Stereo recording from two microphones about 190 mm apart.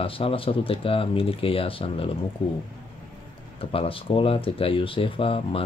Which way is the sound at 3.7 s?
30° left (ahead or behind).